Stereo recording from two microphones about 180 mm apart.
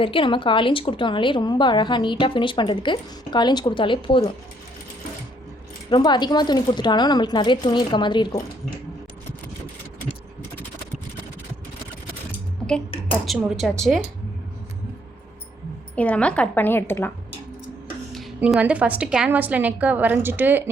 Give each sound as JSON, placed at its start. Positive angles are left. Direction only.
{"t": 0.0, "sound": "a woman's voice", "side_deg": 30}
{"t": 5.9, "sound": "a woman's voice", "side_deg": 25}
{"t": 13.2, "sound": "a woman's voice", "side_deg": 0}
{"t": 16.0, "sound": "a woman's voice", "side_deg": 5}
{"t": 18.3, "sound": "a woman's voice", "side_deg": -10}